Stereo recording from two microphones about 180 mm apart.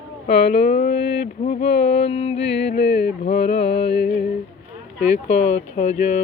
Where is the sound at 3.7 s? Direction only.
65° left (ahead or behind).